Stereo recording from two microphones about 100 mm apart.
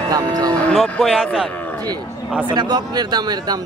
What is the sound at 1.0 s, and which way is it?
Speech, 5° right (ahead or behind).